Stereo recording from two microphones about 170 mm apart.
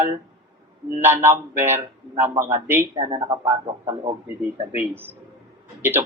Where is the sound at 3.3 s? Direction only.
20° right (ahead or behind).